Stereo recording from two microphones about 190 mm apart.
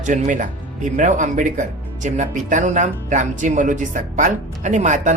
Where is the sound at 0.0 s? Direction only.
40° right (ahead or behind).